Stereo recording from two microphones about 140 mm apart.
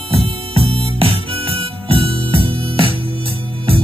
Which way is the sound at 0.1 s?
45° right (ahead or behind).